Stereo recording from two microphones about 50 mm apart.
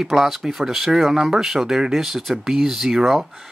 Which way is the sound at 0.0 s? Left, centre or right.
Centre.